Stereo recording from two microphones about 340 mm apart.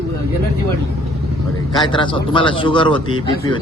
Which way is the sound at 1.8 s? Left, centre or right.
Centre.